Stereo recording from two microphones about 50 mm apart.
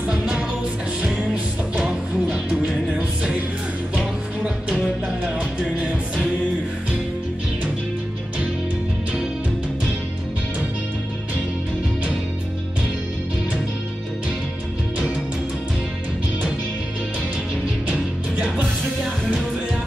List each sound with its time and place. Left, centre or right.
0.1 s music: centre
4.0 s music: centre
17.8 s music: right